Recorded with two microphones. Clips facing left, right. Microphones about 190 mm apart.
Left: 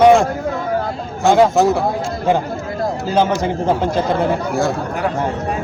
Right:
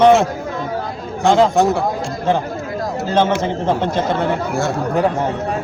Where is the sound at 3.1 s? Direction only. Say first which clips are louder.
Right 1 dB; 10° left (ahead or behind).